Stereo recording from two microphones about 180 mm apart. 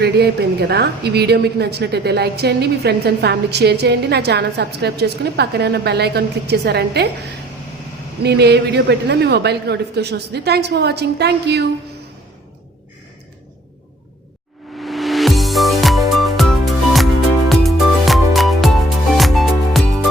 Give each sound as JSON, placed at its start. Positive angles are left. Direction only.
{"t": 0.0, "sound": "a woman's voice", "side_deg": -65}
{"t": 8.2, "sound": "a woman's voice", "side_deg": -65}
{"t": 14.8, "sound": "music", "side_deg": 0}